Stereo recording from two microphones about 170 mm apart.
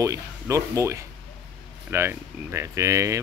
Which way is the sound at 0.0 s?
20° right (ahead or behind).